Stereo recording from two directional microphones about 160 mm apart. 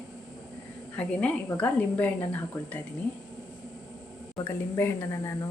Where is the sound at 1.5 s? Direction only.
10° left (ahead or behind).